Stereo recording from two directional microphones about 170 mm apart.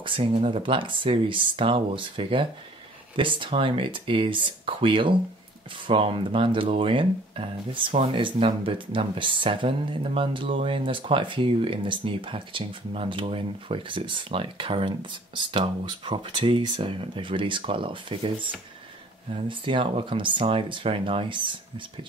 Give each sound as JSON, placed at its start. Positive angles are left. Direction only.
{"t": 0.0, "sound": "speech", "side_deg": -30}
{"t": 19.3, "sound": "speech", "side_deg": -30}